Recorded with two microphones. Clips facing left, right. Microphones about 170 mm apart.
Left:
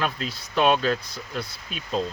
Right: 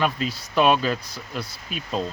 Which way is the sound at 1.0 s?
35° right (ahead or behind).